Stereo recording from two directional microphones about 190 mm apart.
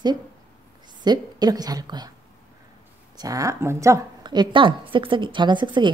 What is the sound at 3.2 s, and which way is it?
A woman's voice, 20° right (ahead or behind).